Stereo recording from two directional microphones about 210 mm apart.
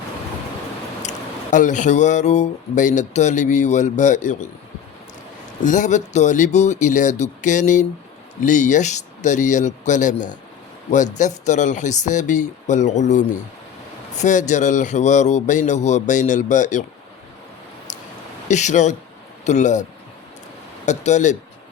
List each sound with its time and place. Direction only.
1.0 s speech: 35° left (ahead or behind)
5.6 s speech: 35° left (ahead or behind)
18.4 s speech: 35° left (ahead or behind)
20.8 s speech: 35° left (ahead or behind)